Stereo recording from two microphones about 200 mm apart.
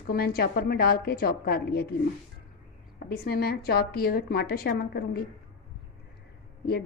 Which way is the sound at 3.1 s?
50° left (ahead or behind).